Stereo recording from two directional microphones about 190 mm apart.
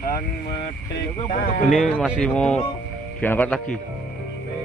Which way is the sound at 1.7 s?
Centre (ahead or behind).